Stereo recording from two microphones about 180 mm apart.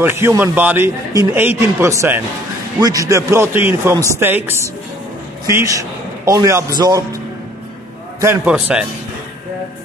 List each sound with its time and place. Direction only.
0.0 s a man's voice: 15° right (ahead or behind)
8.2 s a man's voice: 15° right (ahead or behind)